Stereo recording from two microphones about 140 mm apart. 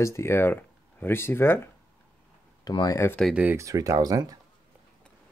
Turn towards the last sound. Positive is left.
turn(degrees=-25)  # may be behind; listen again after turning